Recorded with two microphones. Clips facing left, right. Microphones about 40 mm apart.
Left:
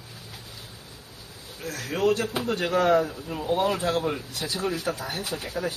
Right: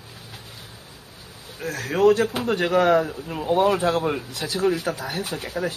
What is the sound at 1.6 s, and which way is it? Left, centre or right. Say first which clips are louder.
Speech: right 6 dB; right.